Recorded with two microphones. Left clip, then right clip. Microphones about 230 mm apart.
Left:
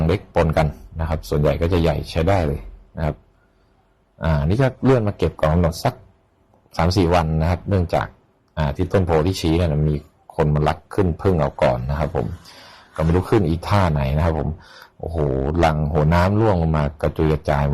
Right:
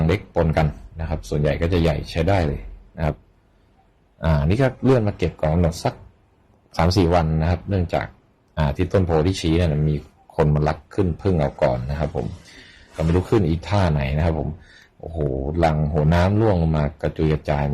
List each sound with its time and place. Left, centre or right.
0.0 s speech: centre
2.9 s a sound: centre
4.2 s speech: centre
4.6 s speech: centre
6.7 s speech: centre
7.3 s speech: centre
8.5 s speech: centre
8.9 s speech: centre
10.3 s speech: centre
10.9 s speech: centre
13.3 s speech: centre
15.5 s speech: left